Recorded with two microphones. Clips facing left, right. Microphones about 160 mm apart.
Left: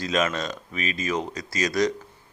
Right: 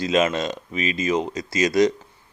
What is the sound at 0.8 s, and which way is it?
Speech, 40° left (ahead or behind).